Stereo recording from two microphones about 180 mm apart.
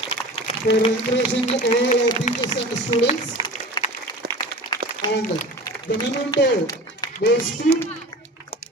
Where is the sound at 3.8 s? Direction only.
25° left (ahead or behind).